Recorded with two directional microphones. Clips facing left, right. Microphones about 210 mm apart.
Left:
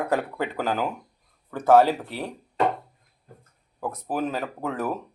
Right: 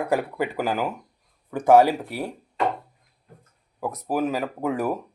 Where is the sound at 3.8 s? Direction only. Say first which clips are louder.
Right 3 dB; 10° right (ahead or behind).